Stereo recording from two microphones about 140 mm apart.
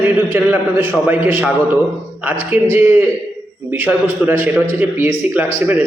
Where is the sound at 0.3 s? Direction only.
15° right (ahead or behind).